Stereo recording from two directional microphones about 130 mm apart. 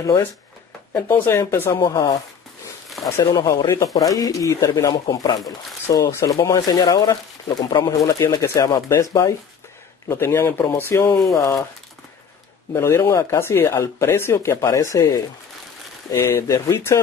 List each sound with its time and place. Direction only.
0.9 s speech: 15° left (ahead or behind)
3.2 s speech: 30° left (ahead or behind)
12.7 s speech: 20° left (ahead or behind)